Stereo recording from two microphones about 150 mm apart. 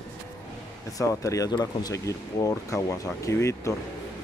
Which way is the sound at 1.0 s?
20° left (ahead or behind).